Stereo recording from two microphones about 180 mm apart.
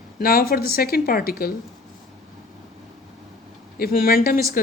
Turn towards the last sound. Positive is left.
turn(degrees=50)  # may be behind; listen again after turning